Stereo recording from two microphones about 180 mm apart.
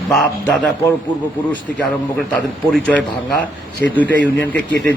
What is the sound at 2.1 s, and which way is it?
Speech, 5° left (ahead or behind).